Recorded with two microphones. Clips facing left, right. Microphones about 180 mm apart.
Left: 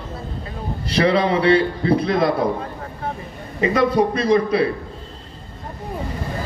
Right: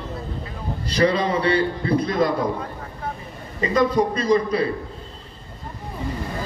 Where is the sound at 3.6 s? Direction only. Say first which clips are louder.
Left 2 dB; 65° left (ahead or behind).